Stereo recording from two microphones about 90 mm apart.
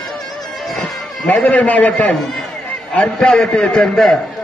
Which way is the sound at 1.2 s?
15° left (ahead or behind).